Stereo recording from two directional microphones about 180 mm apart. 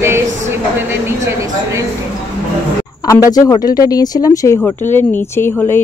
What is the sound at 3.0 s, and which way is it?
A woman's voice, 20° left (ahead or behind).